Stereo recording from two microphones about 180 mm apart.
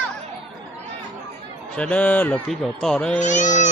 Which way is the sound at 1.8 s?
5° left (ahead or behind).